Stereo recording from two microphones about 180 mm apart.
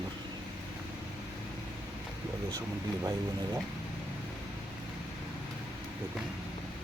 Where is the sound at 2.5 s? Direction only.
20° right (ahead or behind).